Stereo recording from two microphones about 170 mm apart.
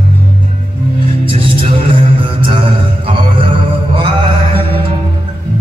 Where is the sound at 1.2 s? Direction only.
30° right (ahead or behind).